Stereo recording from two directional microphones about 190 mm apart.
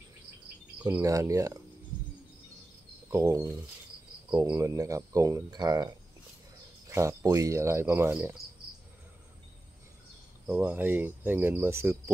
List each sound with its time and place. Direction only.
0.8 s speech: 15° right (ahead or behind)
3.1 s speech: 15° right (ahead or behind)
10.4 s speech: 10° right (ahead or behind)